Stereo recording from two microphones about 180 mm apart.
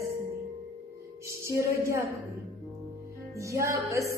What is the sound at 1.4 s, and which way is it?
Speech, 15° right (ahead or behind).